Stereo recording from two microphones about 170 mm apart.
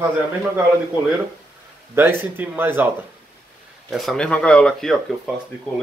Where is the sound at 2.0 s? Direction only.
10° right (ahead or behind).